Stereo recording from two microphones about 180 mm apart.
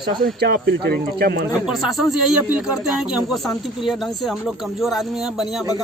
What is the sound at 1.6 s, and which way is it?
A woman's voice, centre (ahead or behind).